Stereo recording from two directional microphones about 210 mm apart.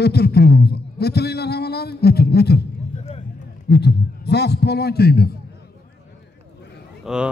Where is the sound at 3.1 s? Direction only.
30° left (ahead or behind).